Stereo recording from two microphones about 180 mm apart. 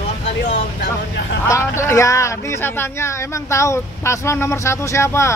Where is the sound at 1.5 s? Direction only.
15° left (ahead or behind).